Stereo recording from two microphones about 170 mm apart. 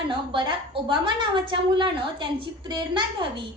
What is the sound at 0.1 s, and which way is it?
A woman's voice, 30° right (ahead or behind).